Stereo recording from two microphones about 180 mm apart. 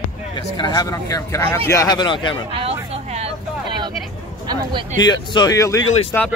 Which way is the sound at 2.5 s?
35° right (ahead or behind).